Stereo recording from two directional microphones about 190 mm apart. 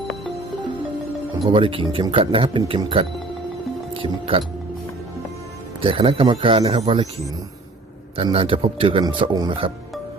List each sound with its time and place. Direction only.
1.5 s a man's voice: 30° right (ahead or behind)
5.8 s a man's voice: 30° right (ahead or behind)
8.1 s a man's voice: 30° right (ahead or behind)